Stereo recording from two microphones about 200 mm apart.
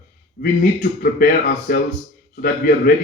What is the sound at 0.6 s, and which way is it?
A man's voice, 45° left (ahead or behind).